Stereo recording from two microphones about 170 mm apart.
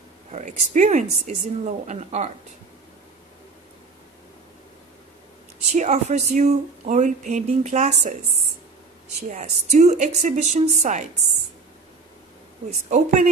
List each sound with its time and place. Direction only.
0.3 s speech: 45° right (ahead or behind)
5.7 s speech: 45° right (ahead or behind)
9.3 s speech: 45° right (ahead or behind)
12.9 s speech: 45° right (ahead or behind)